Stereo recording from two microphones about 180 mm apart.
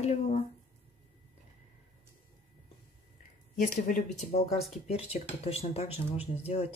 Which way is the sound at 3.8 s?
45° left (ahead or behind).